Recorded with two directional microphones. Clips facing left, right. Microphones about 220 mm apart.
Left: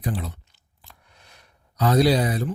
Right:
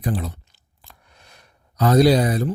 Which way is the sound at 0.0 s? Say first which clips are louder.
Right 4 dB; 45° right (ahead or behind).